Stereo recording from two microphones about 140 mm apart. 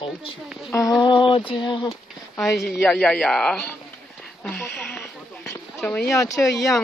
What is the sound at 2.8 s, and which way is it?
Speech, 5° left (ahead or behind).